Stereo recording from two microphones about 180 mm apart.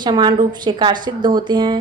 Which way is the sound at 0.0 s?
25° right (ahead or behind).